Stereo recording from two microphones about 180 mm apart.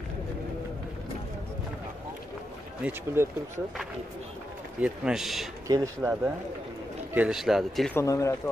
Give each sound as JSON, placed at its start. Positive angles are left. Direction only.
{"t": 2.8, "sound": "speech", "side_deg": -10}
{"t": 4.7, "sound": "a man's voice", "side_deg": -5}
{"t": 5.7, "sound": "speech", "side_deg": -15}
{"t": 7.2, "sound": "a man's voice", "side_deg": -5}
{"t": 7.9, "sound": "speech", "side_deg": 15}